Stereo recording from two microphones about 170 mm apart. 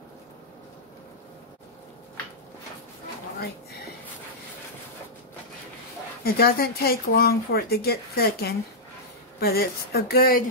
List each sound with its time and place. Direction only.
6.2 s speech: 65° left (ahead or behind)